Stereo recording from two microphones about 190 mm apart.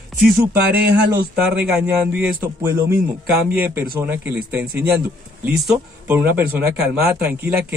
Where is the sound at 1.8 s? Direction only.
10° right (ahead or behind).